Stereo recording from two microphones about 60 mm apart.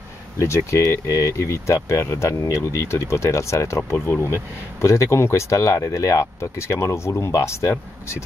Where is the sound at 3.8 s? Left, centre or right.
Left.